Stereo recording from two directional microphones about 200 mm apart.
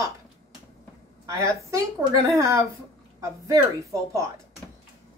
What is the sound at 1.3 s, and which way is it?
Speech, 15° right (ahead or behind).